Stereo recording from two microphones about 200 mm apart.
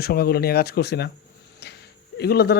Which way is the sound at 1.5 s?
55° left (ahead or behind).